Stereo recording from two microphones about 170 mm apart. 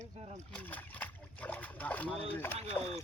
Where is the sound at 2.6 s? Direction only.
35° right (ahead or behind).